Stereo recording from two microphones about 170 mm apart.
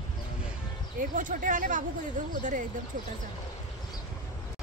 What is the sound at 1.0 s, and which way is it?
Speech, 50° right (ahead or behind).